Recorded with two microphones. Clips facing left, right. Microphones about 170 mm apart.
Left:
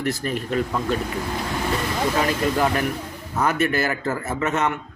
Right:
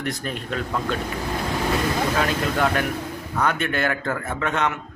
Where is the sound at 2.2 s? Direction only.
5° left (ahead or behind).